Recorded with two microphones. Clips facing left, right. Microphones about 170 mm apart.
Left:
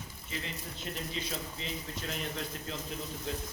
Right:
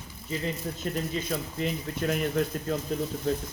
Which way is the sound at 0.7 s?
50° right (ahead or behind).